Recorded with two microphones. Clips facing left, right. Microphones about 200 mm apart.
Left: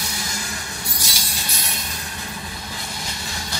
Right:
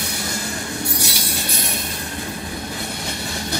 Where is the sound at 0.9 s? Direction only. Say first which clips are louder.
Right 7 dB; 60° right (ahead or behind).